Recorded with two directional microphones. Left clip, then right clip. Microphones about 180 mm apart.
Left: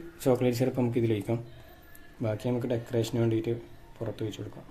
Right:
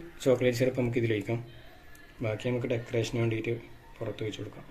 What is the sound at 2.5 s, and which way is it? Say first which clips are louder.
Speech: even; 45° left (ahead or behind).